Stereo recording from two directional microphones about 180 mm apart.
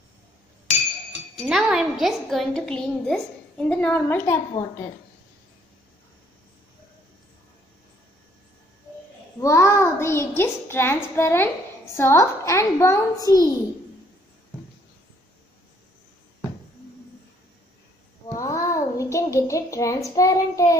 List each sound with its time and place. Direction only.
1.3 s a woman's voice: centre (ahead or behind)
9.4 s a child's voice: 15° left (ahead or behind)
18.3 s child singing: 20° left (ahead or behind)
20.2 s a child's voice: 15° left (ahead or behind)